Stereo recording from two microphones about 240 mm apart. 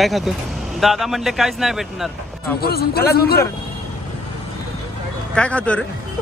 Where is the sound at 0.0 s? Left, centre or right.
Centre.